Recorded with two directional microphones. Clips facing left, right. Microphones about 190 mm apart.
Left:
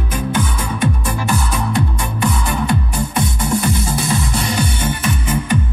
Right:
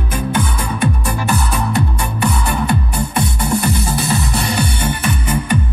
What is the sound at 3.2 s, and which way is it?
Music, 65° right (ahead or behind).